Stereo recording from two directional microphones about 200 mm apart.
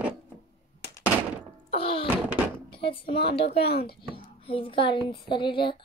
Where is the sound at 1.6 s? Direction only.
25° left (ahead or behind).